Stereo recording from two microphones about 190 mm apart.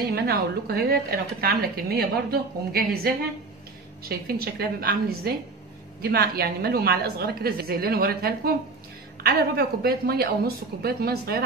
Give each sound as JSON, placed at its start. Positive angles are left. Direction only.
{"t": 0.1, "sound": "a woman's voice", "side_deg": -55}
{"t": 4.1, "sound": "a woman's voice", "side_deg": -55}